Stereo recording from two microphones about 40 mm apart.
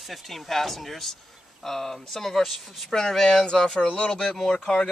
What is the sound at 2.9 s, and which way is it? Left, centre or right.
Speech, centre.